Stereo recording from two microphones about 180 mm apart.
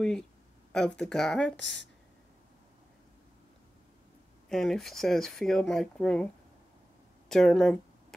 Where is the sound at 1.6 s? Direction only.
85° left.